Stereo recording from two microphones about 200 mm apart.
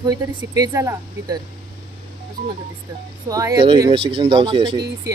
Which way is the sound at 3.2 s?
20° right (ahead or behind).